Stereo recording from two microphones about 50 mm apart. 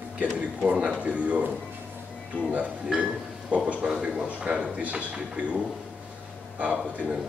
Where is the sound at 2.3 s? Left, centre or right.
Left.